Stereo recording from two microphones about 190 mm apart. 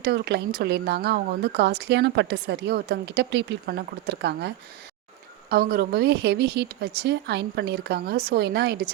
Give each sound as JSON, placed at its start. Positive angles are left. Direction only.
{"t": 0.0, "sound": "speech", "side_deg": -60}